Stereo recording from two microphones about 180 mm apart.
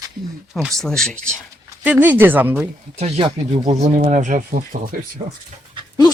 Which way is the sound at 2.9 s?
35° right (ahead or behind).